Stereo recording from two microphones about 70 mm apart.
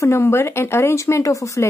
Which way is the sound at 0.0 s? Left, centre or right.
Left.